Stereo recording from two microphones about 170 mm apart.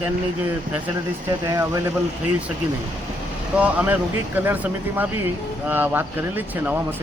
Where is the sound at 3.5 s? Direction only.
10° right (ahead or behind).